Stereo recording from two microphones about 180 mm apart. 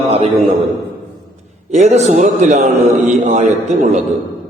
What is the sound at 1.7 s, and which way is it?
A man's voice, 40° right (ahead or behind).